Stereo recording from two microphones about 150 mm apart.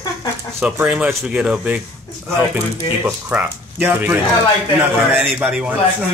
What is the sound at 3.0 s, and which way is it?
Speech, 10° right (ahead or behind).